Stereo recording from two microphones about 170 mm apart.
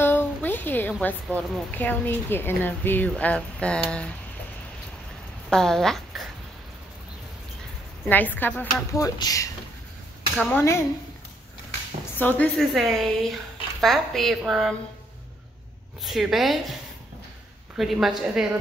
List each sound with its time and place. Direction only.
0.0 s a sound: 10° left (ahead or behind)
1.0 s speech: 10° left (ahead or behind)
5.5 s speech: 5° left (ahead or behind)
8.0 s speech: 10° left (ahead or behind)
10.5 s speech: 15° left (ahead or behind)
12.2 s a woman's voice: 10° left (ahead or behind)
16.0 s a woman's voice: centre (ahead or behind)
17.7 s a woman's voice: centre (ahead or behind)